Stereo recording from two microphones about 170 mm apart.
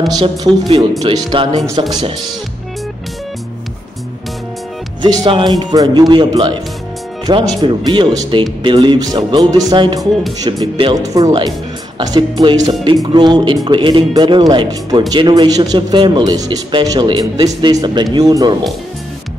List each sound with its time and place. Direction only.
0.1 s speech: 25° right (ahead or behind)
0.7 s speech: 35° right (ahead or behind)
5.0 s speech: 25° right (ahead or behind)